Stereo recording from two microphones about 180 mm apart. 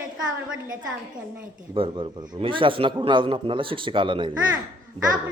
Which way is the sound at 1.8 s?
30° right (ahead or behind).